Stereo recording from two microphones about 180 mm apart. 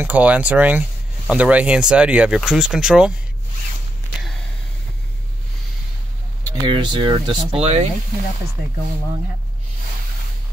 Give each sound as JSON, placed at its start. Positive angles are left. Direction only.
{"t": 0.0, "sound": "speech", "side_deg": -10}
{"t": 6.7, "sound": "speech", "side_deg": -25}